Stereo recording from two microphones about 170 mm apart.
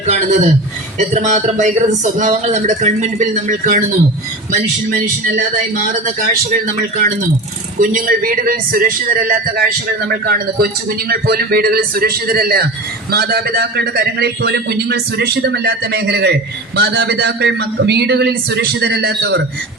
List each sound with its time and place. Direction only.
0.0 s speech: 45° right (ahead or behind)
5.9 s speech: 50° right (ahead or behind)
7.8 s a man's voice: 55° right (ahead or behind); by 19.4 s 80° right